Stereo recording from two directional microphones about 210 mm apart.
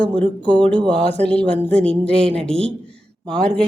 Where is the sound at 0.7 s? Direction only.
25° right (ahead or behind).